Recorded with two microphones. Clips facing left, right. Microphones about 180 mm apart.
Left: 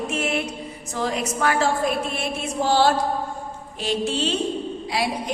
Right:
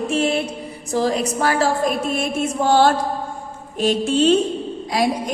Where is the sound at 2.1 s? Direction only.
50° right (ahead or behind).